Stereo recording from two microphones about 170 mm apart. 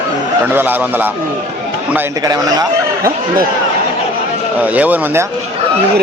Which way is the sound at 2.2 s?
20° right (ahead or behind).